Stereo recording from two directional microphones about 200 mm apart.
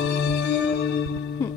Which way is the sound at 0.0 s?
60° left (ahead or behind).